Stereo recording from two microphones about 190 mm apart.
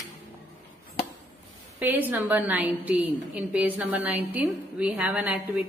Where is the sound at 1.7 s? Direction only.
10° right (ahead or behind).